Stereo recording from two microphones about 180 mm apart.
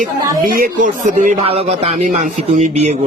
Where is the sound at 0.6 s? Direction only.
45° right (ahead or behind).